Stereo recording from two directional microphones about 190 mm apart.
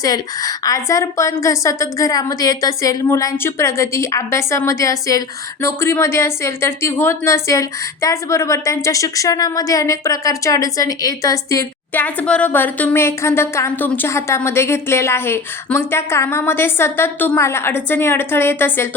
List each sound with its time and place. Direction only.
0.0 s a woman's voice: 20° left (ahead or behind)